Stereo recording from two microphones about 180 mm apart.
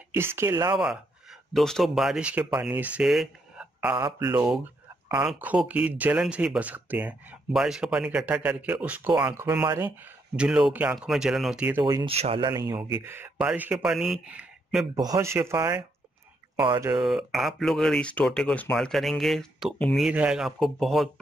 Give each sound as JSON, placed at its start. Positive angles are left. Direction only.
{"t": 0.1, "sound": "speech", "side_deg": -15}
{"t": 1.5, "sound": "speech", "side_deg": 0}
{"t": 3.9, "sound": "speech", "side_deg": -15}
{"t": 11.8, "sound": "speech", "side_deg": -25}
{"t": 13.0, "sound": "speech", "side_deg": -10}
{"t": 15.0, "sound": "speech", "side_deg": -20}
{"t": 17.0, "sound": "speech", "side_deg": 0}